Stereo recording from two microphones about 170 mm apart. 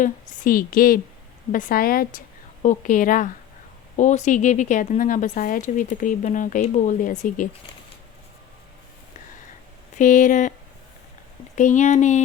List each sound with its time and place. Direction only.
0.0 s a woman's voice: 55° left (ahead or behind)
2.6 s a woman's voice: 45° left (ahead or behind)
10.0 s a woman's voice: 50° left (ahead or behind)
11.5 s a woman's voice: 45° left (ahead or behind)